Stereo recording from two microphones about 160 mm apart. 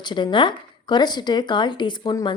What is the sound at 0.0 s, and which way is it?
Speech, 30° left (ahead or behind).